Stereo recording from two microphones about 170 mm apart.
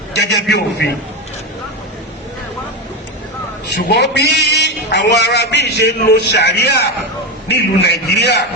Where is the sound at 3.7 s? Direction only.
80° left.